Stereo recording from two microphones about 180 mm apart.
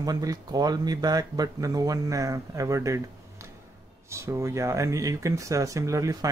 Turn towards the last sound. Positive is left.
turn(degrees=-20)  # may be behind; listen again after turning